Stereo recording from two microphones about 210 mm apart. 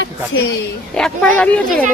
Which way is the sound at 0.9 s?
5° left (ahead or behind).